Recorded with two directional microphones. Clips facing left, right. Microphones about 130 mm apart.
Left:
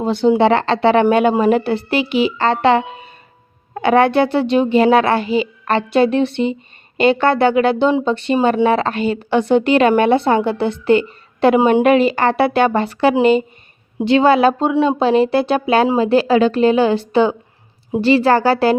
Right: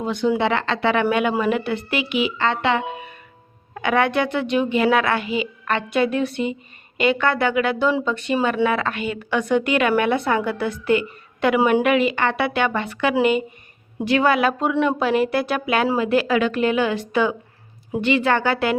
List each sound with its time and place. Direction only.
0.0 s a woman's voice: 30° left (ahead or behind)